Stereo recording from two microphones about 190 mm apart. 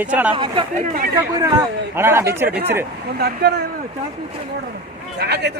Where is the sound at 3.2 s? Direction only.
60° right (ahead or behind).